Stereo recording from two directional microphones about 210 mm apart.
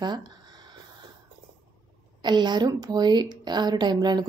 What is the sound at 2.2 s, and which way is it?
A woman's voice, 20° right (ahead or behind).